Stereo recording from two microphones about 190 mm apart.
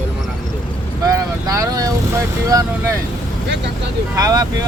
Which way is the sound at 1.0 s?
15° right (ahead or behind).